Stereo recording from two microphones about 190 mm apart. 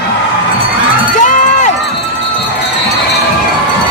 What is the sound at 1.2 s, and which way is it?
Crowd, 40° left (ahead or behind).